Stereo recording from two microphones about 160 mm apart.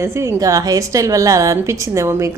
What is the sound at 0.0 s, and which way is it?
A woman's voice, 15° right (ahead or behind).